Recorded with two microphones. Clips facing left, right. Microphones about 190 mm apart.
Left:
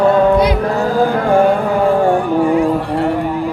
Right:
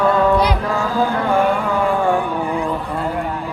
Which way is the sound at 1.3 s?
35° left (ahead or behind).